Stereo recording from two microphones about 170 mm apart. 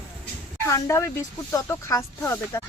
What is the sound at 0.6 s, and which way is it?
Speech, 15° left (ahead or behind).